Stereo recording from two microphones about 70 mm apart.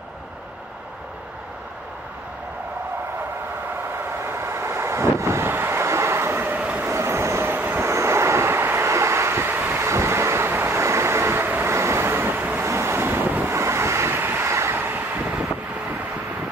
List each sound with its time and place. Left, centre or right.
4.2 s vehicle: right
6.5 s train: right
6.9 s vehicle: right
7.9 s vehicle: right
12.6 s waves: right
13.6 s vehicle: right
14.7 s vehicle: right